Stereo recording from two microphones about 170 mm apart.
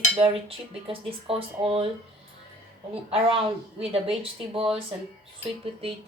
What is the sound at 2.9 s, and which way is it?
Speech, 35° right (ahead or behind).